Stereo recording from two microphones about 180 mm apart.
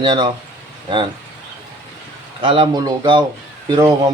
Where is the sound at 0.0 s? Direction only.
25° right (ahead or behind).